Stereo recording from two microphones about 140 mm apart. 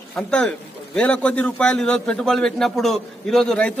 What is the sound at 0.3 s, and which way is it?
A man's voice, 10° left (ahead or behind).